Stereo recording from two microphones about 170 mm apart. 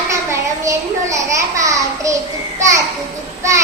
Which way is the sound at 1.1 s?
20° right (ahead or behind).